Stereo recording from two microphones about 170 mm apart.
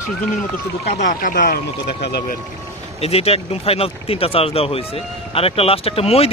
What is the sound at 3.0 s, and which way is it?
A man's voice, 35° left (ahead or behind).